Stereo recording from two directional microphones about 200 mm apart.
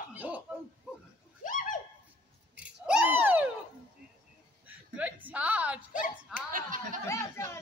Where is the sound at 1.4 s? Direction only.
40° left (ahead or behind).